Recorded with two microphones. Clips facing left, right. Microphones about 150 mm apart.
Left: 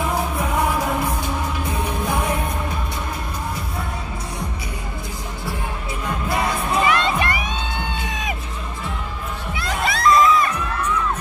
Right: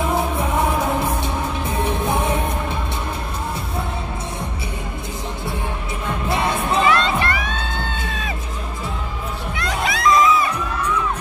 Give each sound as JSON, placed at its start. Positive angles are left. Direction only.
{"t": 1.9, "sound": "music", "side_deg": -25}
{"t": 6.9, "sound": "crowd", "side_deg": 15}
{"t": 9.6, "sound": "crowd", "side_deg": 0}